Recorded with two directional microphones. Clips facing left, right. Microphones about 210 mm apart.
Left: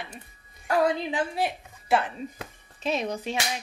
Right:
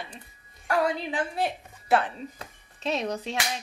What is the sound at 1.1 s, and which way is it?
Speech, 10° left (ahead or behind).